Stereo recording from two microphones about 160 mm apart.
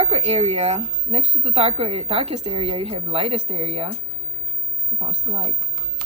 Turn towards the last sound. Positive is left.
turn(degrees=-35)  # may be behind; listen again after turning